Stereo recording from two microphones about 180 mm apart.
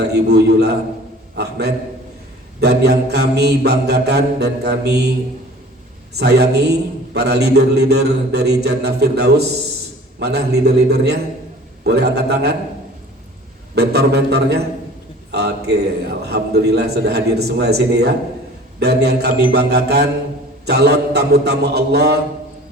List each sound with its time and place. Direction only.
0.0 s a man's voice: 65° right (ahead or behind)
6.1 s a man's voice: 65° right (ahead or behind)
13.7 s a man's voice: 65° right (ahead or behind)